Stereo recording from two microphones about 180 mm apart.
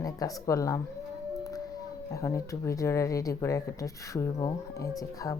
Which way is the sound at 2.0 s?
15° left (ahead or behind).